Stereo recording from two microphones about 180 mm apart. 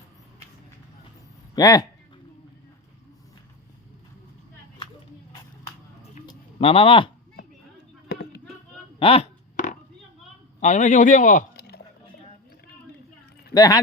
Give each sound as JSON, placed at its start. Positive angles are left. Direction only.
{"t": 1.5, "sound": "speech", "side_deg": 20}
{"t": 6.2, "sound": "a sound", "side_deg": 30}
{"t": 8.0, "sound": "a sound", "side_deg": 65}
{"t": 9.0, "sound": "speech", "side_deg": 30}
{"t": 10.6, "sound": "a man's voice", "side_deg": 40}
{"t": 13.5, "sound": "speech", "side_deg": 20}